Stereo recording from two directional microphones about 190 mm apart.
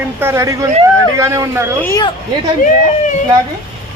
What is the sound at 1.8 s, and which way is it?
Speech, 15° left (ahead or behind).